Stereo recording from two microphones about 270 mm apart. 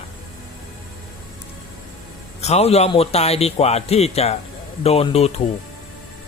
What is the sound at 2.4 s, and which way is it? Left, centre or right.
A man's voice, left.